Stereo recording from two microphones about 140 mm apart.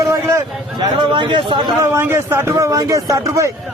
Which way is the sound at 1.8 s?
15° right (ahead or behind).